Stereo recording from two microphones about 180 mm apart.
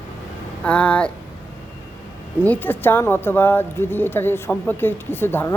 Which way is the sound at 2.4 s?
10° left (ahead or behind).